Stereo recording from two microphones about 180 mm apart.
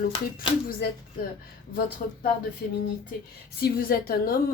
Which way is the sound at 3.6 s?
55° left (ahead or behind).